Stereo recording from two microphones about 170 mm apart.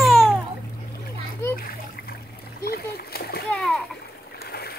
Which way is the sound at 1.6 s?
60° left (ahead or behind).